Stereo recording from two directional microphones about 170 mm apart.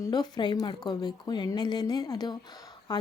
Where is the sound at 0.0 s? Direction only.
25° left (ahead or behind).